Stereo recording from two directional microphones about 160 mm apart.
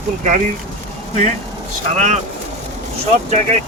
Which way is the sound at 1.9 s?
50° right (ahead or behind).